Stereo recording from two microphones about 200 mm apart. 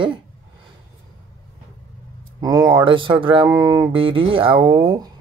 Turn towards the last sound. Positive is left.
turn(degrees=-25)  # may be behind; listen again after turning